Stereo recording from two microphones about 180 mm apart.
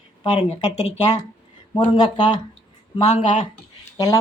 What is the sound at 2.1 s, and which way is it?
Speech, 25° left (ahead or behind).